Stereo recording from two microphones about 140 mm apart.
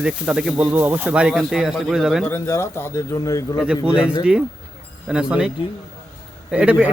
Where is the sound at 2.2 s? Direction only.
15° left (ahead or behind).